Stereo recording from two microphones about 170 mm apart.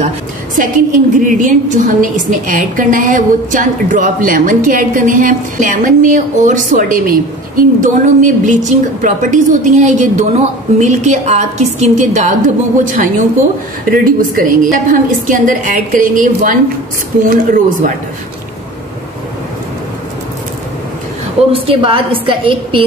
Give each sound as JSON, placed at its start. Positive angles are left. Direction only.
{"t": 0.6, "sound": "a woman's voice", "side_deg": -50}
{"t": 21.5, "sound": "a woman's voice", "side_deg": -30}